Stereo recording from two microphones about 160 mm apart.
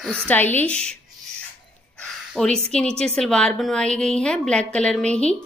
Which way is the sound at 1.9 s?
5° left (ahead or behind).